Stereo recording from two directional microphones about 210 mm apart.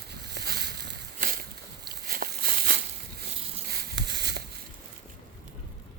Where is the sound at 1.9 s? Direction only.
50° right (ahead or behind).